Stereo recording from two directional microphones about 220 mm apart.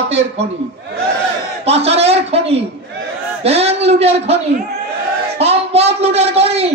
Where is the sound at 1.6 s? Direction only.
30° right (ahead or behind).